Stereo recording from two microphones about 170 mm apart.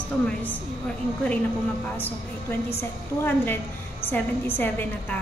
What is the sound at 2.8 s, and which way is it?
A woman's voice, 10° left (ahead or behind).